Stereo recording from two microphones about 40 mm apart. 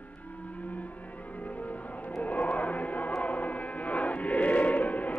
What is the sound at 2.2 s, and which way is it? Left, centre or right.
Choir, left.